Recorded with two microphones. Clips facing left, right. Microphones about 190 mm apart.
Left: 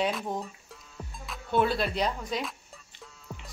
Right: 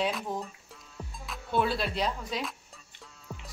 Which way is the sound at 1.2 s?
Centre (ahead or behind).